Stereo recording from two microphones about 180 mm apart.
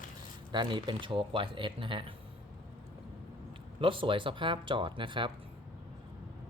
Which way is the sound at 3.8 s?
30° right (ahead or behind).